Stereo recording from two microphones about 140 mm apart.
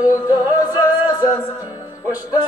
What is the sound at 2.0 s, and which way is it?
Music, 25° left (ahead or behind).